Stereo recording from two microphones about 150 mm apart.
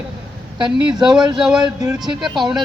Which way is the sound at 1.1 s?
30° right (ahead or behind).